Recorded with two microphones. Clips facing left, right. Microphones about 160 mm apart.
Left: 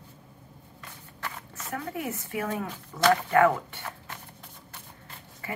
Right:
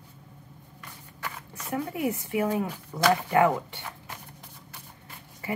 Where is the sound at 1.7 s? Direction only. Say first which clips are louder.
Right 5 dB; 15° right (ahead or behind).